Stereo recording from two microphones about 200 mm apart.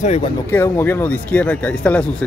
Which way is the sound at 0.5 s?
10° left (ahead or behind).